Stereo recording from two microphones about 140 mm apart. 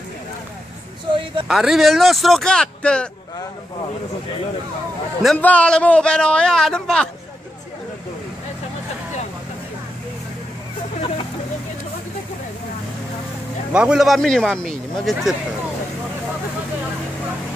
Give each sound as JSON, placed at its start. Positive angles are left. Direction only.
{"t": 1.1, "sound": "a sound", "side_deg": -35}
{"t": 1.5, "sound": "a man's voice", "side_deg": 0}
{"t": 5.2, "sound": "a man's voice", "side_deg": 5}
{"t": 13.7, "sound": "a man's voice", "side_deg": -5}